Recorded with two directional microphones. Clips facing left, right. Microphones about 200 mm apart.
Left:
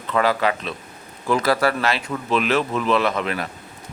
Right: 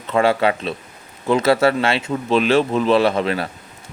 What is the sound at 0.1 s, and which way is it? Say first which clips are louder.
Speech: right 3 dB; 25° right (ahead or behind).